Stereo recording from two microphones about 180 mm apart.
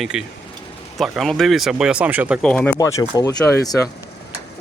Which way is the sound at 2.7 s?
20° left (ahead or behind).